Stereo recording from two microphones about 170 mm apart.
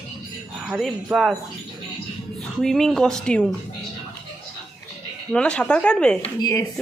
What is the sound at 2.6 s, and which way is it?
Speech, 5° left (ahead or behind).